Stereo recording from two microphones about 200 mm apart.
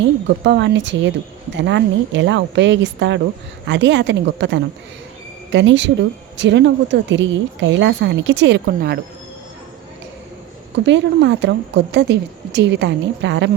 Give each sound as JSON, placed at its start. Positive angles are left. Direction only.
{"t": 0.0, "sound": "speech", "side_deg": -60}
{"t": 10.8, "sound": "speech", "side_deg": -65}